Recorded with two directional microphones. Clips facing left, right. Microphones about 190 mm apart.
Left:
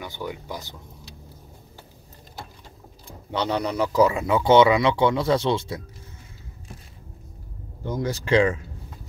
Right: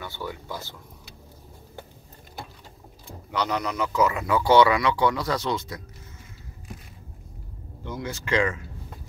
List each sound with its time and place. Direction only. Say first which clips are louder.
0.0 s speech: left 2 dB; 15° left (ahead or behind)
3.3 s speech: left 2 dB; 30° left (ahead or behind)
7.8 s speech: left 6 dB; 40° left (ahead or behind)